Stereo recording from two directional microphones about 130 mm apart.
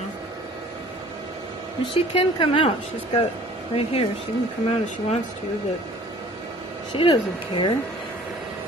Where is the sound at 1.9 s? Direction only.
45° left (ahead or behind).